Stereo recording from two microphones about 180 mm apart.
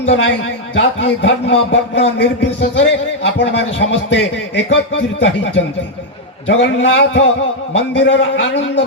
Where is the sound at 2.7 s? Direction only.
90° left.